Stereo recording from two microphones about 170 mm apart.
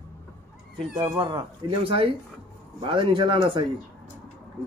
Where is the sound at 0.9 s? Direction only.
30° right (ahead or behind).